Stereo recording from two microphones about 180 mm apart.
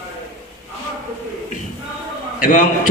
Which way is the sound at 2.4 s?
50° left (ahead or behind).